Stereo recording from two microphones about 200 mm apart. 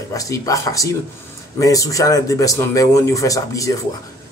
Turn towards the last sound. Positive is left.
turn(degrees=15)  # may be behind; listen again after turning